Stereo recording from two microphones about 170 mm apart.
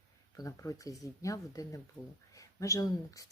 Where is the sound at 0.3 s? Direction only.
20° left (ahead or behind).